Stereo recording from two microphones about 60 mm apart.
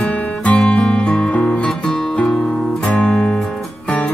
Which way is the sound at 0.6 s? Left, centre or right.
Centre.